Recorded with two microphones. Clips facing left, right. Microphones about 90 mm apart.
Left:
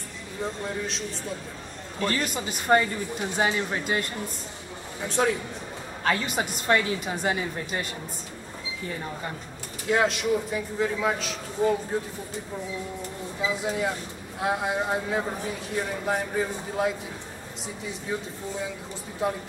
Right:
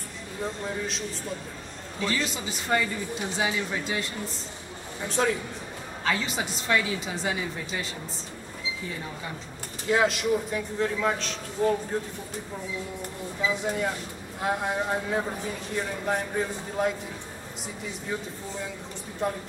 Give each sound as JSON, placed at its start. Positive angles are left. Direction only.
{"t": 0.7, "sound": "a man's voice", "side_deg": 0}
{"t": 2.0, "sound": "a woman's voice", "side_deg": 50}
{"t": 5.0, "sound": "a man's voice", "side_deg": 0}
{"t": 6.0, "sound": "a woman's voice", "side_deg": 50}
{"t": 9.8, "sound": "a man's voice", "side_deg": 0}
{"t": 13.5, "sound": "a man's voice", "side_deg": 5}
{"t": 19.2, "sound": "a man's voice", "side_deg": 5}